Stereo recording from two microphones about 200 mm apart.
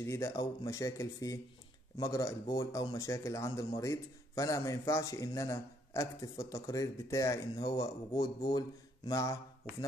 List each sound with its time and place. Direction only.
0.0 s a man's voice: 15° left (ahead or behind)